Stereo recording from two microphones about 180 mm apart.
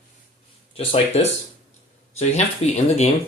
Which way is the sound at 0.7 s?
35° left (ahead or behind).